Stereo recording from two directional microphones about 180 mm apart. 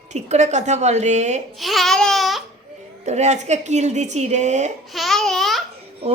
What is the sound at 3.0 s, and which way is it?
Speech, 40° right (ahead or behind).